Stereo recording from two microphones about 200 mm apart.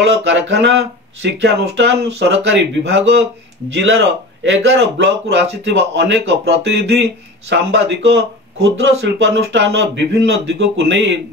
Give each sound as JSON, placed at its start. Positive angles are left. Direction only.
{"t": 0.0, "sound": "speech", "side_deg": -60}
{"t": 4.4, "sound": "speech", "side_deg": -60}